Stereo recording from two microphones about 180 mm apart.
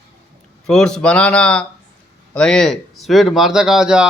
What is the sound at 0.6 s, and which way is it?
Speech, 5° left (ahead or behind).